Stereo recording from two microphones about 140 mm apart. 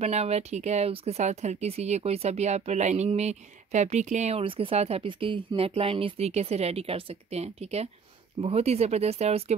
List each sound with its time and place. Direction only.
0.0 s speech: 50° right (ahead or behind)